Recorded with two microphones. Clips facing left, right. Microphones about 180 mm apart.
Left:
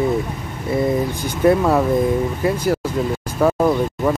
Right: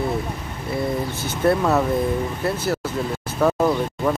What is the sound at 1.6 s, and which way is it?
Speech, 10° left (ahead or behind).